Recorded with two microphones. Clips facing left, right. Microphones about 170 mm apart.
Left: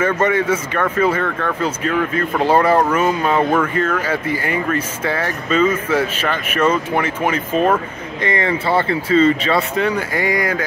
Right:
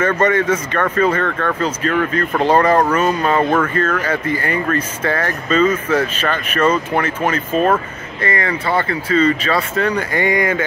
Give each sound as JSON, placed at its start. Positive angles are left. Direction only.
{"t": 0.0, "sound": "speech", "side_deg": 10}
{"t": 8.2, "sound": "speech", "side_deg": 20}
{"t": 9.8, "sound": "speech", "side_deg": 5}